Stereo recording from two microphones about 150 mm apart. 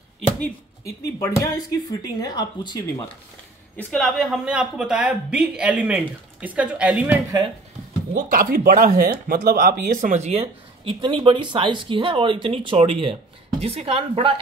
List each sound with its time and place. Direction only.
1.2 s speech: 20° left (ahead or behind)
3.7 s speech: centre (ahead or behind)
8.1 s speech: 65° right (ahead or behind); by 10.4 s 50° right (ahead or behind)
10.4 s speech: 35° right (ahead or behind)